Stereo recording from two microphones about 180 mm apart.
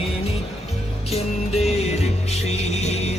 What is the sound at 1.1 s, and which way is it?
Music, 35° left (ahead or behind).